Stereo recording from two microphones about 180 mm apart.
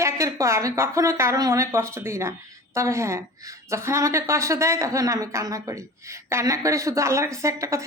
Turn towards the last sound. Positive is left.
turn(degrees=-15)  # may be behind; listen again after turning